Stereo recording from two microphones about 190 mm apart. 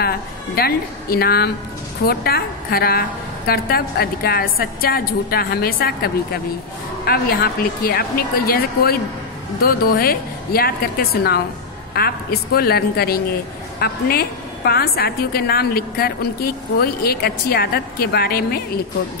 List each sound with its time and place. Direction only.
0.6 s a woman's voice: 55° left (ahead or behind)